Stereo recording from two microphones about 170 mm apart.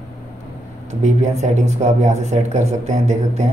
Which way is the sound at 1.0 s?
40° right (ahead or behind).